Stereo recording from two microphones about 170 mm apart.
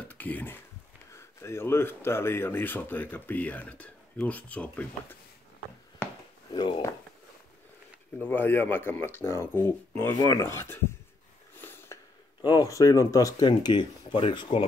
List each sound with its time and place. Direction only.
0.1 s speech: 10° left (ahead or behind)
6.5 s speech: 30° left (ahead or behind)
8.2 s speech: 10° left (ahead or behind)
11.5 s a sound: 15° left (ahead or behind)
12.4 s speech: 20° left (ahead or behind)